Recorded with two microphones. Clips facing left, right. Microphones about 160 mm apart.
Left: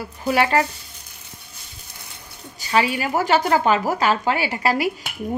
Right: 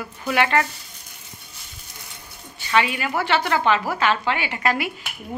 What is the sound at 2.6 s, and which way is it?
Speech, 35° left (ahead or behind).